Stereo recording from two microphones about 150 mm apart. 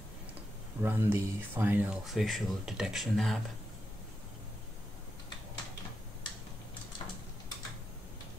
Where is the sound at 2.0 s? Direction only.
Centre (ahead or behind).